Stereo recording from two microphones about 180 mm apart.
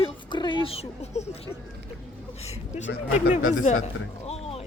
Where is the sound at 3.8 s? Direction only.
35° left (ahead or behind).